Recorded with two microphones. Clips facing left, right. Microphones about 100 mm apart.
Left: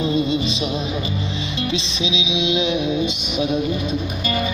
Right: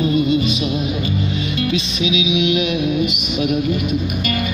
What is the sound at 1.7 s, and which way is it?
Music, 25° left (ahead or behind).